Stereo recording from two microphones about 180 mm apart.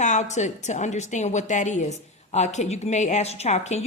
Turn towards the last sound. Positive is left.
turn(degrees=40)  # may be behind; listen again after turning